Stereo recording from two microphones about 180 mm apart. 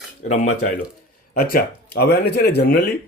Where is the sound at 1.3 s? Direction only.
55° left (ahead or behind).